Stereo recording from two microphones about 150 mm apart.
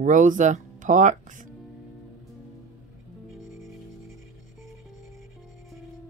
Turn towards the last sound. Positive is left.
turn(degrees=0)  # may be behind; listen again after turning